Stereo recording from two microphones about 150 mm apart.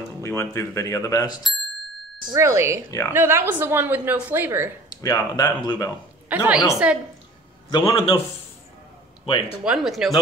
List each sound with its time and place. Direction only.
0.2 s speech: 20° left (ahead or behind)
2.3 s a woman's voice: 20° right (ahead or behind)
4.8 s speech: 25° left (ahead or behind)
6.2 s a woman's voice: 10° right (ahead or behind)
7.7 s a man's voice: 40° left (ahead or behind)
9.2 s speech: 35° left (ahead or behind)
9.7 s speech: centre (ahead or behind)